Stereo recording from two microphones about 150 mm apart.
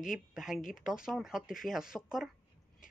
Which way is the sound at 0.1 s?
5° right (ahead or behind).